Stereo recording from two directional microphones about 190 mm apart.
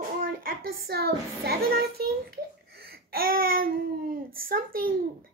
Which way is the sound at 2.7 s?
55° right (ahead or behind).